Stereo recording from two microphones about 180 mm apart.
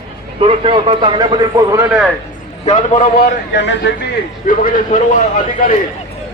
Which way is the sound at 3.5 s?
75° left (ahead or behind).